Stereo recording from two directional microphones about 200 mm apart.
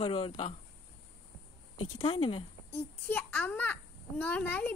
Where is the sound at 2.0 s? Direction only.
30° left (ahead or behind).